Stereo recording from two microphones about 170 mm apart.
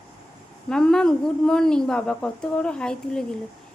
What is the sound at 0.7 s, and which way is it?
Speech, 5° left (ahead or behind).